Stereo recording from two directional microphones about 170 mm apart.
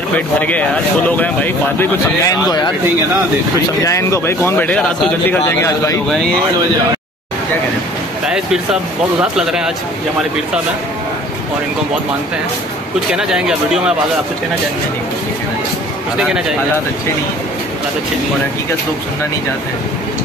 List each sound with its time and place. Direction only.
0.1 s speech: 10° left (ahead or behind)
2.4 s speech: 25° left (ahead or behind)
3.8 s speech: 15° left (ahead or behind)
9.2 s speech: 5° right (ahead or behind)
13.1 s speech: 5° right (ahead or behind)